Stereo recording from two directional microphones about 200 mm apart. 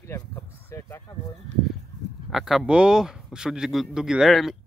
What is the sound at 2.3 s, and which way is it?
Speech, centre (ahead or behind).